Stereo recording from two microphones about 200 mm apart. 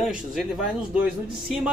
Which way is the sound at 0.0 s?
Centre (ahead or behind).